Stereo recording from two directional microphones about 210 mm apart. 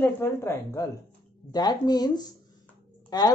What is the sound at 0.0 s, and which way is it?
A woman's voice, 10° left (ahead or behind).